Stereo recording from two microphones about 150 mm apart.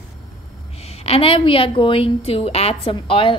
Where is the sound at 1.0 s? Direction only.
40° left (ahead or behind).